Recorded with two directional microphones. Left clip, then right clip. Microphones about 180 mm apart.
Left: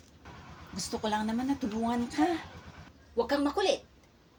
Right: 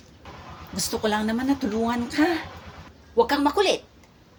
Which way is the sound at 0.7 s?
25° right (ahead or behind).